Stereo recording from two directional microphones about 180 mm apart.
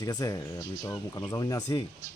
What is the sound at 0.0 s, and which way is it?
Speech, 20° left (ahead or behind).